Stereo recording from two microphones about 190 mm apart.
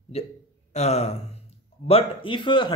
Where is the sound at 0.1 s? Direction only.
35° left (ahead or behind).